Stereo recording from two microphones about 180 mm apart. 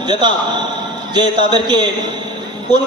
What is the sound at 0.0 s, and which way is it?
A man's voice, 25° right (ahead or behind).